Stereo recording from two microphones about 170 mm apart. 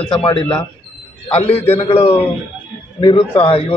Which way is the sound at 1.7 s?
40° left (ahead or behind).